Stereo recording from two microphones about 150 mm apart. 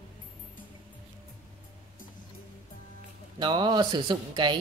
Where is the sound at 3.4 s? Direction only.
30° right (ahead or behind).